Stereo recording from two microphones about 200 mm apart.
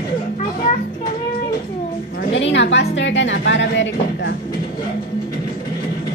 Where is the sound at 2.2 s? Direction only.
65° left (ahead or behind).